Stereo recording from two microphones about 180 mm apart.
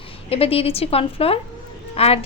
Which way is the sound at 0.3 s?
35° left (ahead or behind).